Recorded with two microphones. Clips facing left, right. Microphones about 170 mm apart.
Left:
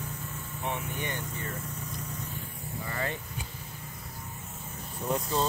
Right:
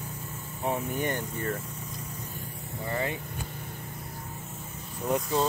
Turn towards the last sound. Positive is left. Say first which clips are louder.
# right 3 dB
turn(degrees=-10)  # may be behind; listen again after turning